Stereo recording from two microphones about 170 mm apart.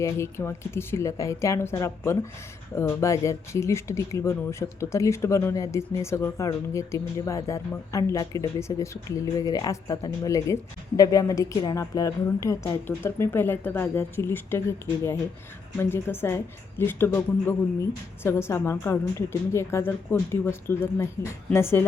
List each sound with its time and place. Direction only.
0.0 s speech: 15° left (ahead or behind)
2.7 s speech: 15° left (ahead or behind)
15.8 s speech: 15° left (ahead or behind)